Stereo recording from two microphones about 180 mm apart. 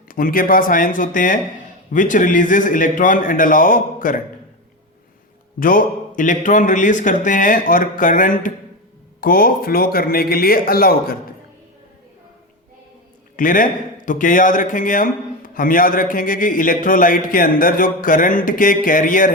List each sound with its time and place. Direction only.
0.1 s a man's voice: 50° left (ahead or behind)
5.5 s a man's voice: 50° left (ahead or behind)
13.3 s a man's voice: 50° left (ahead or behind)